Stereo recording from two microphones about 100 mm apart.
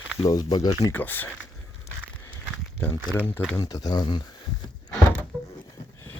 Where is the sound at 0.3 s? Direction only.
35° left (ahead or behind).